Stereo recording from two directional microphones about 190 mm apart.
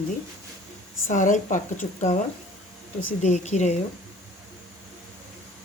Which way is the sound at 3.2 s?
35° left (ahead or behind).